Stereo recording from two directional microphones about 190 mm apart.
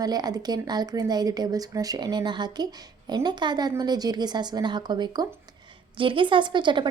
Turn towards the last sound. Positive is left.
turn(degrees=-25)  # may be behind; listen again after turning